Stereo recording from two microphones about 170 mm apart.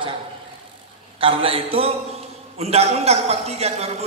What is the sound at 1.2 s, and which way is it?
A man's voice, 35° right (ahead or behind).